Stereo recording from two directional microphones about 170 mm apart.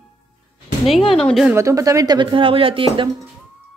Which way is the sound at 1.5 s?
20° right (ahead or behind).